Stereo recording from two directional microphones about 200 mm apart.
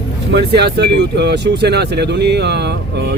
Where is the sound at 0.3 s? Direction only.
55° right (ahead or behind).